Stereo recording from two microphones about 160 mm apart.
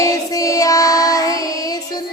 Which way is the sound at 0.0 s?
20° left (ahead or behind).